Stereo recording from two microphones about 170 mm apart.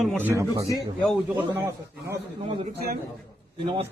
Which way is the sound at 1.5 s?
15° right (ahead or behind).